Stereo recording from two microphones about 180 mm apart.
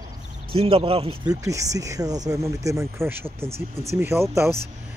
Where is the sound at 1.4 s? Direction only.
15° right (ahead or behind).